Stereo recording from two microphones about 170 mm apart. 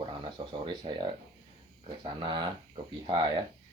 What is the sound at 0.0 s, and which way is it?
Speech, 25° right (ahead or behind).